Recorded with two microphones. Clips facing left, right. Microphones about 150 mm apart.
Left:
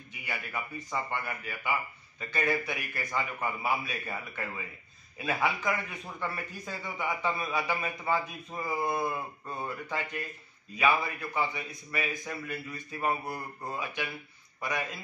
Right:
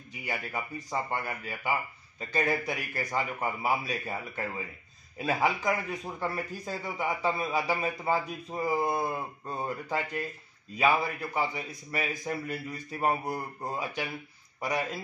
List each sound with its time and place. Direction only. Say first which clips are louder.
0.2 s a man's voice: right 3 dB; 35° right (ahead or behind)
10.8 s a man's voice: right 2 dB; 35° right (ahead or behind)